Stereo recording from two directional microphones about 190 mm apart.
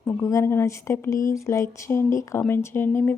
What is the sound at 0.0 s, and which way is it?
Speech, 15° left (ahead or behind).